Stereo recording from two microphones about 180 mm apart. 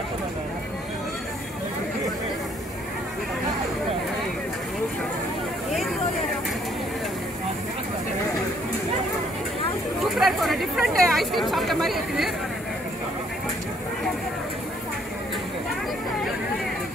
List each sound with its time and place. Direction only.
10.1 s chatter: centre (ahead or behind)